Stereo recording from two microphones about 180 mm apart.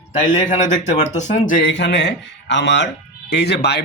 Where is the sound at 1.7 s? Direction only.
85° left.